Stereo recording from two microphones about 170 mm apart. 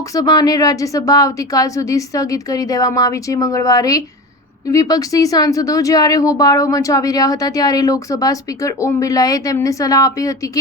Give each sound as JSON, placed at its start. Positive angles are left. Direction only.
{"t": 0.1, "sound": "a woman's voice", "side_deg": 20}